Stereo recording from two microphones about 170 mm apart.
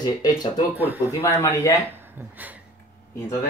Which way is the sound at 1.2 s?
15° left (ahead or behind).